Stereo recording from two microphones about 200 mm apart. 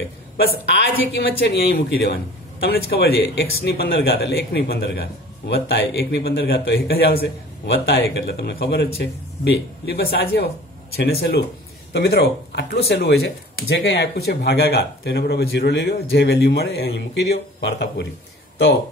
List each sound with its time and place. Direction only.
0.4 s a man's voice: 55° left (ahead or behind)